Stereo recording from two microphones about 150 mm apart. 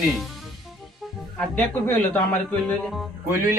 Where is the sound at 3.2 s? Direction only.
15° right (ahead or behind).